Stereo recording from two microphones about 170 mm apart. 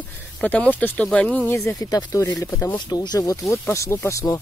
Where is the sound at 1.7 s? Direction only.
20° left (ahead or behind).